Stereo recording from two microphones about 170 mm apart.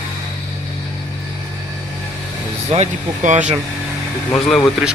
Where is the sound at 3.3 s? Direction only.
45° right (ahead or behind).